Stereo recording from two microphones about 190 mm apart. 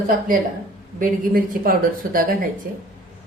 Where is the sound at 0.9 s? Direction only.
45° right (ahead or behind).